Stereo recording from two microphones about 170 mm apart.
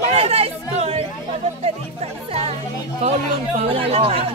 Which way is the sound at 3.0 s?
40° right (ahead or behind).